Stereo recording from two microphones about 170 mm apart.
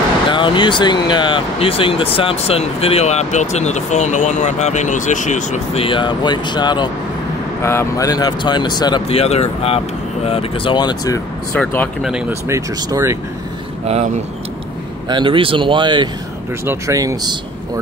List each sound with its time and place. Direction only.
0.3 s speech: 30° left (ahead or behind); by 5.9 s 45° left (ahead or behind)
5.9 s speech: 30° left (ahead or behind)
9.1 s speech: 40° left (ahead or behind)
11.5 s speech: 10° left (ahead or behind)
12.3 s speech: 15° right (ahead or behind)
13.8 s speech: 40° right (ahead or behind)
15.0 s speech: 30° right (ahead or behind)